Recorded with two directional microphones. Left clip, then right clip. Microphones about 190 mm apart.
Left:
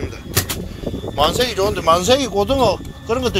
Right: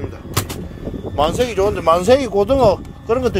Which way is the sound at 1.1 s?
35° right (ahead or behind).